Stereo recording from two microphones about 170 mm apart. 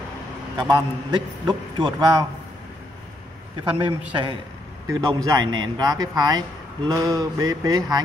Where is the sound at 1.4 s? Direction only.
25° right (ahead or behind).